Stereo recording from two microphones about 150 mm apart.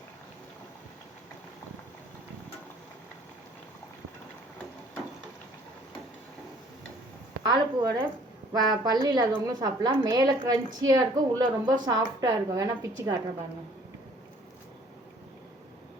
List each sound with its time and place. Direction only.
7.4 s a woman's voice: 30° right (ahead or behind)